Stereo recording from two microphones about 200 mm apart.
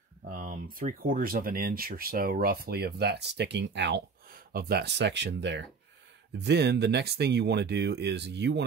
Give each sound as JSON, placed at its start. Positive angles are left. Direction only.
{"t": 0.3, "sound": "speech", "side_deg": -45}